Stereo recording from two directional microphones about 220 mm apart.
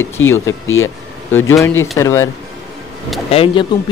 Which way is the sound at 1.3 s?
10° left (ahead or behind).